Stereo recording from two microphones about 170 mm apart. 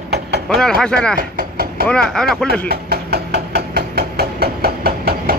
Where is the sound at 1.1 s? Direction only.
60° right (ahead or behind).